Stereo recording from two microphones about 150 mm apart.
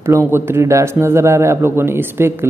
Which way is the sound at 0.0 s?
15° right (ahead or behind).